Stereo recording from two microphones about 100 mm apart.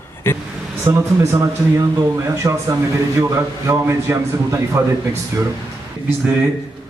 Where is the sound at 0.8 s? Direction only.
30° right (ahead or behind).